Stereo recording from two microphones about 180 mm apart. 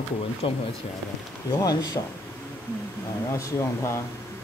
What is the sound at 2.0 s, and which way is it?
Speech, 30° left (ahead or behind).